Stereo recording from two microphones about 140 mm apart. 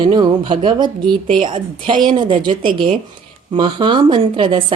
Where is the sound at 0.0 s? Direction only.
35° right (ahead or behind).